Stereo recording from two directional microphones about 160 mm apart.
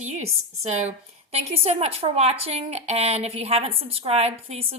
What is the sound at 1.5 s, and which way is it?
A woman's voice, 40° right (ahead or behind).